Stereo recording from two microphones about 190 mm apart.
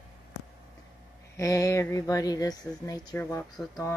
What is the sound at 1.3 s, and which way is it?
Speech, 15° left (ahead or behind).